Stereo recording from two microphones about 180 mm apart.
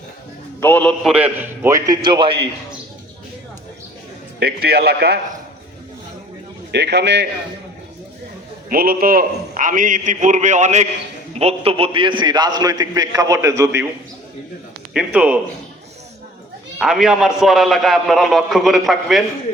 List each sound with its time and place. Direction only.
0.6 s a man's voice: 10° left (ahead or behind)
1.0 s a man's voice: 5° right (ahead or behind); by 2.3 s 25° right (ahead or behind)
4.4 s a man's voice: 60° right (ahead or behind)
6.7 s a man's voice: 70° right (ahead or behind)
8.7 s a man's voice: 55° right (ahead or behind); by 13.8 s 15° right (ahead or behind)
14.9 s a man's voice: 5° right (ahead or behind)
16.7 s a man's voice: 5° right (ahead or behind)